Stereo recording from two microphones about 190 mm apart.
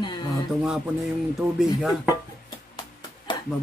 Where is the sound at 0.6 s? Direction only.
Centre (ahead or behind).